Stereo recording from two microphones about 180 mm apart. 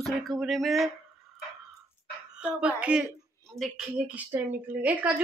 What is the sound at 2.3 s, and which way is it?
A woman's voice, 5° right (ahead or behind).